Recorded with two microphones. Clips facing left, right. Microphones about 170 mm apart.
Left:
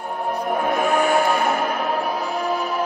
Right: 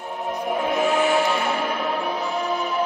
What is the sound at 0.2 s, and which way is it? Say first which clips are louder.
Music: left 2 dB; 50° left (ahead or behind).